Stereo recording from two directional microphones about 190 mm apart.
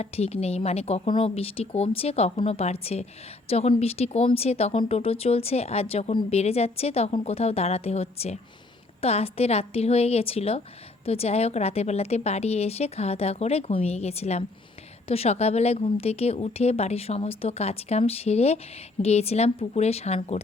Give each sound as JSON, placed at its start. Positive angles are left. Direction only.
{"t": 0.0, "sound": "speech", "side_deg": 35}